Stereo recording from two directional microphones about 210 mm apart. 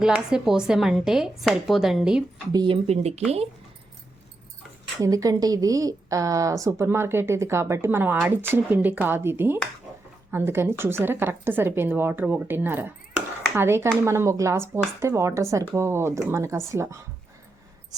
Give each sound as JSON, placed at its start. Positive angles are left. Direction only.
{"t": 0.0, "sound": "speech", "side_deg": -5}
{"t": 2.5, "sound": "speech", "side_deg": -20}
{"t": 2.8, "sound": "speech", "side_deg": -30}
{"t": 4.9, "sound": "a woman's voice", "side_deg": -15}